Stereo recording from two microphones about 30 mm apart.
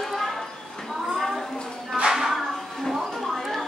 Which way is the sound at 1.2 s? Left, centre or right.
Centre.